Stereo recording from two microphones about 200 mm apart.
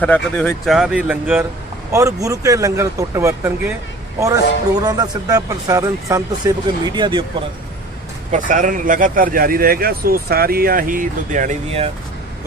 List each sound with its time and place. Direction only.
0.0 s speech: 5° left (ahead or behind); by 3.8 s 10° right (ahead or behind)
4.8 s speech: 20° right (ahead or behind)
8.3 s speech: 40° right (ahead or behind)